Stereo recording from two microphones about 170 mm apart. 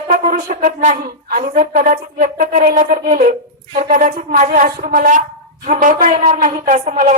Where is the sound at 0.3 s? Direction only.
55° right (ahead or behind).